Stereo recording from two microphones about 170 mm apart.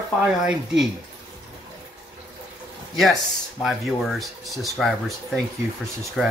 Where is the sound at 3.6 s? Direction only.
Centre (ahead or behind).